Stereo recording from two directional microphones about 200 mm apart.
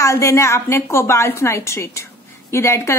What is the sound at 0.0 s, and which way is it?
A woman's voice, 15° left (ahead or behind).